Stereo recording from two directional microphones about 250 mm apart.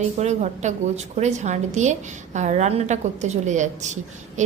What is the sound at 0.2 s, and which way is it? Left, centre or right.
A woman's voice, right.